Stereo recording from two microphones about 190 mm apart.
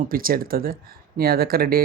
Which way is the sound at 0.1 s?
50° right (ahead or behind).